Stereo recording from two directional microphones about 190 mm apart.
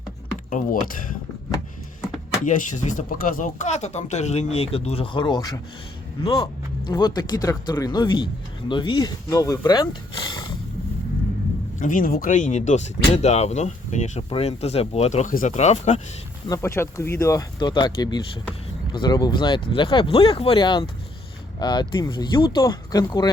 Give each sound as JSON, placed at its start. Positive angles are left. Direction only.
{"t": 2.4, "sound": "speech", "side_deg": 45}
{"t": 11.8, "sound": "speech", "side_deg": 45}
{"t": 16.5, "sound": "speech", "side_deg": 15}